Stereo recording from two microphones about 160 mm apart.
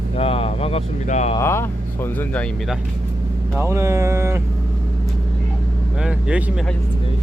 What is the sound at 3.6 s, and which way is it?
Speech, 20° right (ahead or behind).